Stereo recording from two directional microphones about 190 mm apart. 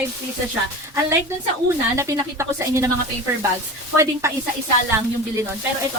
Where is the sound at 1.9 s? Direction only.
15° right (ahead or behind).